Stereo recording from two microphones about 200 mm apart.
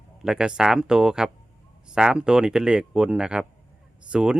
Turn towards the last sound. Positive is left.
turn(degrees=-5)  # may be behind; listen again after turning